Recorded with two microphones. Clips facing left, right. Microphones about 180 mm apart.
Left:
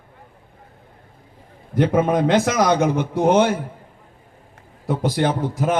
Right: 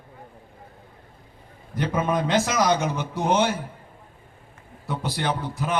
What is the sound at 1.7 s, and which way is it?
A man's voice, 60° left (ahead or behind).